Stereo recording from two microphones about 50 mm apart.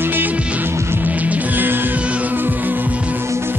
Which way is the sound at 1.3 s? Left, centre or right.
Right.